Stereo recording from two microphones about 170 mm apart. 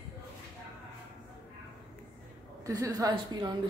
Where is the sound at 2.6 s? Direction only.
20° right (ahead or behind).